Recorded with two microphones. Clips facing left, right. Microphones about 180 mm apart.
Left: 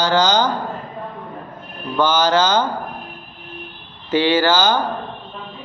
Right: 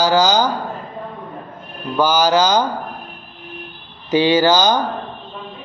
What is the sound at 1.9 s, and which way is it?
Speech, 10° right (ahead or behind).